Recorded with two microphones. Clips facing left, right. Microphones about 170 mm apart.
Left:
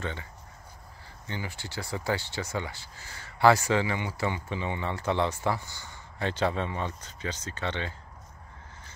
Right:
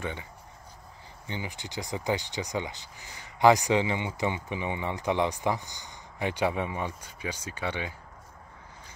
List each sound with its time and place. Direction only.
0.0 s speech: 15° right (ahead or behind)